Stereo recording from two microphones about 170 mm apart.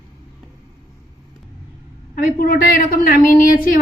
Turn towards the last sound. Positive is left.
turn(degrees=55)  # may be behind; listen again after turning